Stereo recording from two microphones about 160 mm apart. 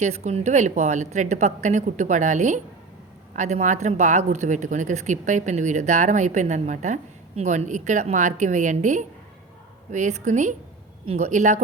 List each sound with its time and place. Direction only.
0.0 s speech: 45° right (ahead or behind)